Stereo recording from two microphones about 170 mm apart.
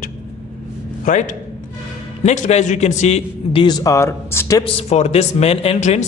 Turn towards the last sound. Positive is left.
turn(degrees=40)  # may be behind; listen again after turning